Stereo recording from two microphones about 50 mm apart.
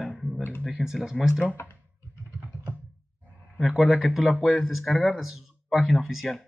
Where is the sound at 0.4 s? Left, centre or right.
Left.